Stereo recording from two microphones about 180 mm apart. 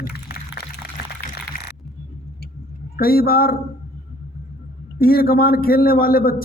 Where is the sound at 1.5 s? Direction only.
50° left (ahead or behind).